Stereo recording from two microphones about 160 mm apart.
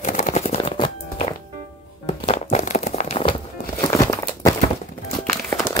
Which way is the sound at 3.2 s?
30° left (ahead or behind).